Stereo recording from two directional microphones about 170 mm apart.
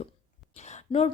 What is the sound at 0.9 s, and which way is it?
Speech, 25° left (ahead or behind).